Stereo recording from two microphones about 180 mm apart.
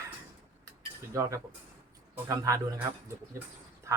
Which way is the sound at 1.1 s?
15° right (ahead or behind).